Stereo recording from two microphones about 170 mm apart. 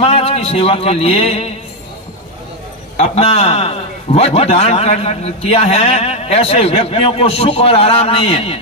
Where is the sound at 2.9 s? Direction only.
35° left (ahead or behind).